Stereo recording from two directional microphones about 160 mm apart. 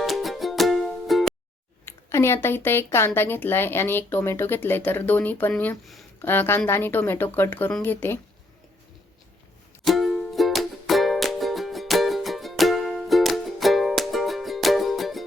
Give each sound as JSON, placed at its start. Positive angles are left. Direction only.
{"t": 0.0, "sound": "music", "side_deg": 0}
{"t": 1.8, "sound": "speech", "side_deg": 15}
{"t": 9.8, "sound": "music", "side_deg": 0}